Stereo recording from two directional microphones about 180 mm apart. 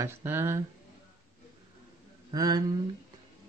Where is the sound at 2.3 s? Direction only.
20° right (ahead or behind).